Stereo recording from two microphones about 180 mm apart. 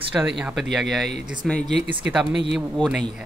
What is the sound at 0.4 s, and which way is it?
Speech, 5° right (ahead or behind).